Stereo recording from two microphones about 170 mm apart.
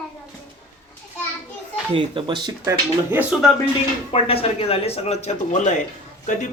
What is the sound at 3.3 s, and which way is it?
Speech, 5° right (ahead or behind).